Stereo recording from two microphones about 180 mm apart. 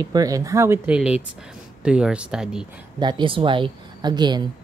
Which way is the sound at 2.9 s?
25° right (ahead or behind).